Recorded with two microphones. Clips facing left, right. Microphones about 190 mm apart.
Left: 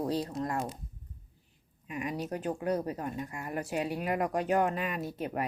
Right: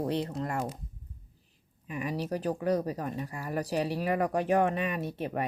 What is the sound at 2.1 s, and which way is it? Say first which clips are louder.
Speech: right 3 dB; 35° right (ahead or behind).